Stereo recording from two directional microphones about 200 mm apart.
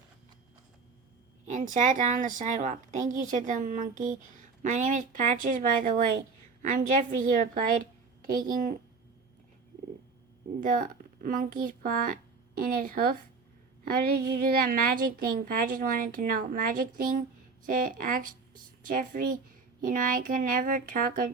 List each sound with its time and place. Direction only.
1.5 s a woman's voice: 40° right (ahead or behind)
10.6 s a child's voice: 40° right (ahead or behind)